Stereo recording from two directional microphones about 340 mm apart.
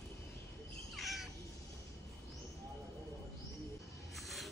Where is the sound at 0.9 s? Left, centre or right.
Centre.